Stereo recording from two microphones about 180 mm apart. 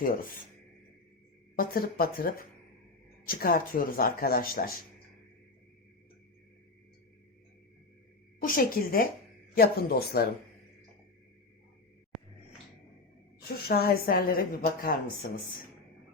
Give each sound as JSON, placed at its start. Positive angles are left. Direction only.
{"t": 1.5, "sound": "a woman's voice", "side_deg": 55}
{"t": 8.4, "sound": "a woman's voice", "side_deg": 50}
{"t": 13.6, "sound": "a woman's voice", "side_deg": 60}